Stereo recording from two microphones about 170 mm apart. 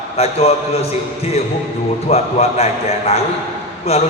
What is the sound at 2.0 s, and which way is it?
Speech, 40° left (ahead or behind).